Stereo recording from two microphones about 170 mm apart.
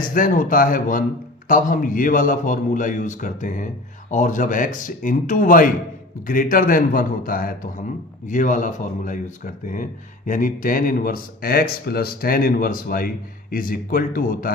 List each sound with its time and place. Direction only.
0.0 s a man's voice: 55° left (ahead or behind)